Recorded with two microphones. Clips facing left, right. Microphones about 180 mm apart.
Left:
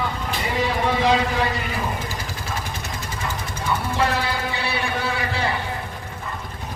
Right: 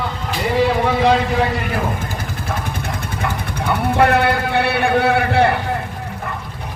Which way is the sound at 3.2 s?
65° right (ahead or behind).